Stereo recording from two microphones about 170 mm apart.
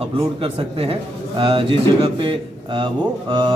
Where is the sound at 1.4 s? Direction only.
30° right (ahead or behind).